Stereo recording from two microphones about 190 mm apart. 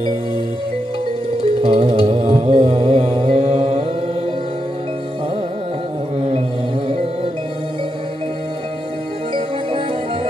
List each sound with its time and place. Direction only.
1.6 s music: 30° right (ahead or behind)